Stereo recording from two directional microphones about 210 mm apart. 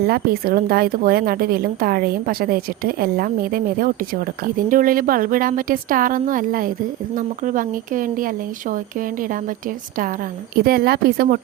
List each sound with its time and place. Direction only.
0.1 s a woman's voice: 45° right (ahead or behind)
10.6 s a woman's voice: 50° right (ahead or behind)